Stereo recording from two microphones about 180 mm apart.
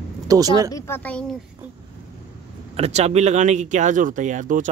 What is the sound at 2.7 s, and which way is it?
Speech, 35° right (ahead or behind).